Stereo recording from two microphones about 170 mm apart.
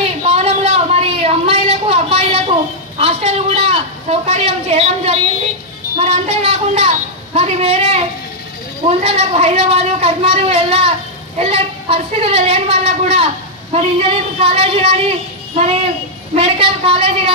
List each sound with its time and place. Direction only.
0.2 s a sound: 40° right (ahead or behind)
3.0 s a woman's voice: 35° right (ahead or behind)
16.3 s a woman's voice: 35° right (ahead or behind)